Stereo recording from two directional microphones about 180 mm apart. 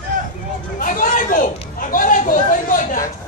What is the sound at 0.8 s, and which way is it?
Chatter, 45° left (ahead or behind).